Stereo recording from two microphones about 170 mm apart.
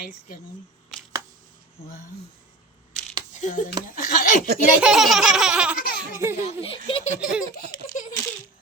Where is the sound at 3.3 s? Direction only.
45° left (ahead or behind).